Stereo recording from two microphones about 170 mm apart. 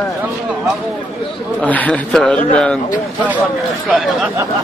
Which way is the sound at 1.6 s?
10° left (ahead or behind).